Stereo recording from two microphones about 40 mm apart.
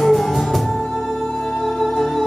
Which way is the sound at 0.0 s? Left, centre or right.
Centre.